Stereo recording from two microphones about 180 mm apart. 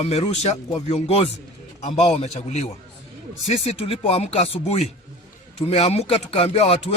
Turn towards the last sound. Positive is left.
turn(degrees=35)  # may be behind; listen again after turning